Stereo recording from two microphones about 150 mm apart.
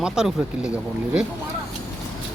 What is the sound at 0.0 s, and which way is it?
Speech, 5° right (ahead or behind).